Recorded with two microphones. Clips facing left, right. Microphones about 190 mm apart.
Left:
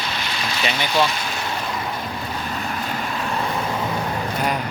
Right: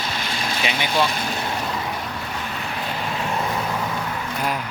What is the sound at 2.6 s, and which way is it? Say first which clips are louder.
Vehicle: left 1 dB; 45° left (ahead or behind).